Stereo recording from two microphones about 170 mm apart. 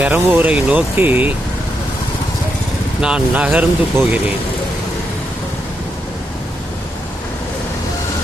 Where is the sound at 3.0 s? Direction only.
5° right (ahead or behind).